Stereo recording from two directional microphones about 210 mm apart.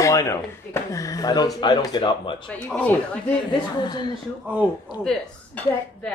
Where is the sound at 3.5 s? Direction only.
20° left (ahead or behind).